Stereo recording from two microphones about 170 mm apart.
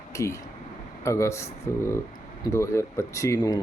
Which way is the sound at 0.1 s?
20° left (ahead or behind).